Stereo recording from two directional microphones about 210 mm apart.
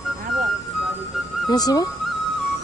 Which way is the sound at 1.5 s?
20° left (ahead or behind).